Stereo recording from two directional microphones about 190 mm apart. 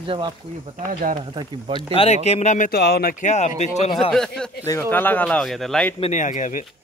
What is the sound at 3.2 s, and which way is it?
Speech, 35° left (ahead or behind).